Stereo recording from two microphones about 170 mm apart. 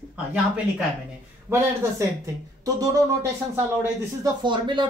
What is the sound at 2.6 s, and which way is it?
Speech, 20° right (ahead or behind).